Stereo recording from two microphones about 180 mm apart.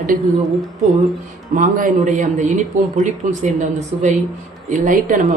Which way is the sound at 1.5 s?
45° right (ahead or behind).